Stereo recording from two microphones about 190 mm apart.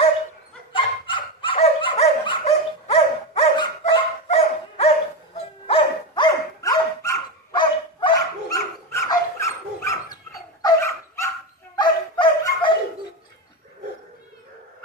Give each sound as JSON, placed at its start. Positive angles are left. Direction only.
{"t": 0.7, "sound": "dog", "side_deg": 25}